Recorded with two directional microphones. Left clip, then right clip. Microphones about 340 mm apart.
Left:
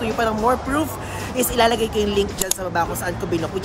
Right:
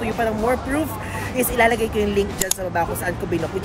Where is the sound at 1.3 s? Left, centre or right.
Centre.